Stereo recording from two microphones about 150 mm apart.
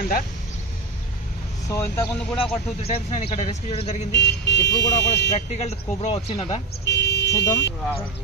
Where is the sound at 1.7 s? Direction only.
15° left (ahead or behind).